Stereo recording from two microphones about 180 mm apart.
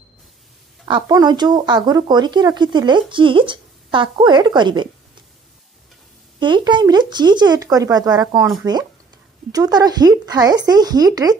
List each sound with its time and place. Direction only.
0.8 s speech: 25° right (ahead or behind)
6.4 s speech: 25° right (ahead or behind)